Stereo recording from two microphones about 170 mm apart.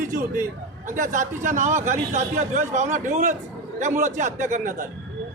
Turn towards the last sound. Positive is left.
turn(degrees=-50)  # may be behind; listen again after turning